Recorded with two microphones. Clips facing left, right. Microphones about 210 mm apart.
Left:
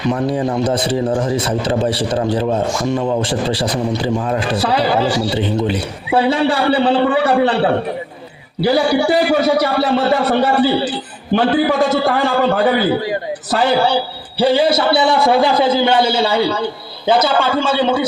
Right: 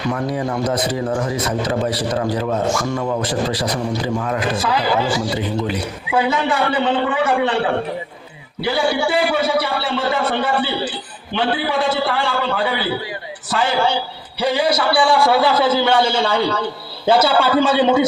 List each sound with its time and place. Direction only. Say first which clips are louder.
0.1 s a man's voice: left 5 dB; 25° left (ahead or behind); by 16.6 s 5° left (ahead or behind)
17.1 s a man's voice: even; 10° right (ahead or behind)